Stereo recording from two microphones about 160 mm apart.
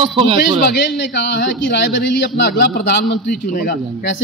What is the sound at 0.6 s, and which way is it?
A man's voice, 90° left.